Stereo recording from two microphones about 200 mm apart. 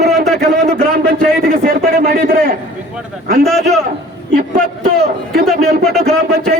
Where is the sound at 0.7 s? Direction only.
50° right (ahead or behind).